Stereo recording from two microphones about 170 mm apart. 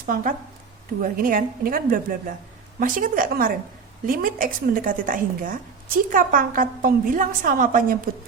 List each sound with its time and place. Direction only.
0.0 s a woman's voice: 55° right (ahead or behind)